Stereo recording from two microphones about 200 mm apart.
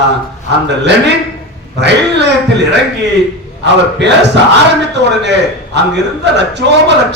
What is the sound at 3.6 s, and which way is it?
A man's voice, 60° right (ahead or behind).